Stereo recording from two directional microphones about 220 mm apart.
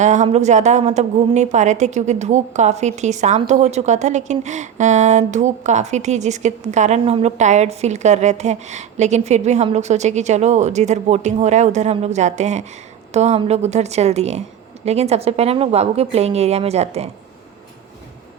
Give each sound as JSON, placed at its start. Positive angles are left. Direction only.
{"t": 0.0, "sound": "a woman's voice", "side_deg": -35}